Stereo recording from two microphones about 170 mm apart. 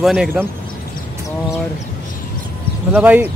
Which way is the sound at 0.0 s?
Centre (ahead or behind).